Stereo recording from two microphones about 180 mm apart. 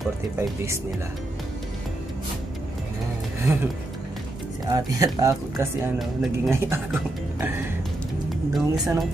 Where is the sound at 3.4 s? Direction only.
10° right (ahead or behind).